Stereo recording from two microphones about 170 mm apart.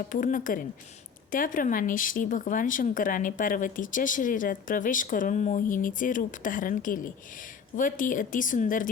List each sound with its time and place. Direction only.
0.1 s speech: 50° left (ahead or behind)